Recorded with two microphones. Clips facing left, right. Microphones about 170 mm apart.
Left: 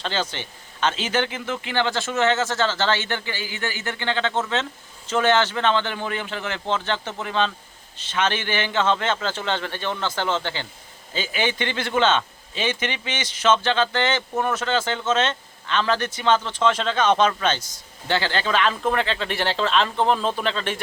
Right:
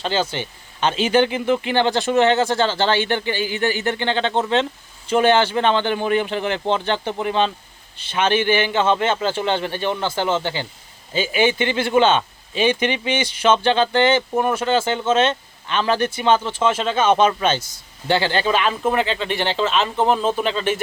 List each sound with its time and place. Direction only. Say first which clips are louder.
0.0 s a man's voice: right 5 dB; 10° right (ahead or behind)